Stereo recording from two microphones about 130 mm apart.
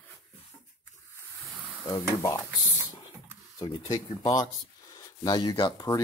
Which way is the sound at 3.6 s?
30° left (ahead or behind).